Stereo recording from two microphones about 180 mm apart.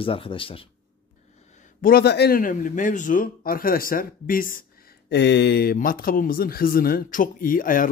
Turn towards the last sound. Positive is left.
turn(degrees=50)  # may be behind; listen again after turning